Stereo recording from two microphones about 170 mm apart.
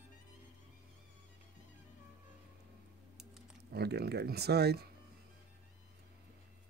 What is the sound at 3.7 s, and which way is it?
Speech, 70° right (ahead or behind).